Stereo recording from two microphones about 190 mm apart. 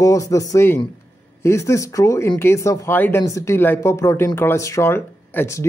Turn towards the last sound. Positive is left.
turn(degrees=15)  # may be behind; listen again after turning